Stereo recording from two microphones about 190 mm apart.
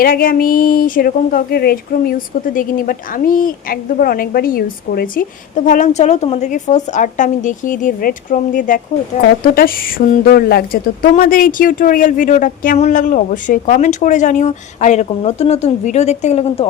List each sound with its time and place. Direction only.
0.0 s a woman's voice: 50° left (ahead or behind)